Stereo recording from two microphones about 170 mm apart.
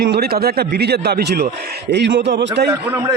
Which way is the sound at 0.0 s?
65° right (ahead or behind).